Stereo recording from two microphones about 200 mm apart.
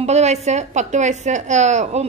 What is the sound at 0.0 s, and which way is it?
A woman's voice, 35° right (ahead or behind).